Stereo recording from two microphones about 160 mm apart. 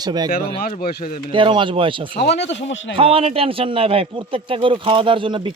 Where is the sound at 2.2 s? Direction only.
90° left.